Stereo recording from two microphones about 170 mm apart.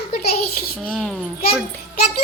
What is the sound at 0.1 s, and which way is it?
Speech, 65° left (ahead or behind).